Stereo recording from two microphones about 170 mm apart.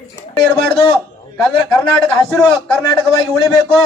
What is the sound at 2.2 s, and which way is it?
A man's voice, 5° left (ahead or behind).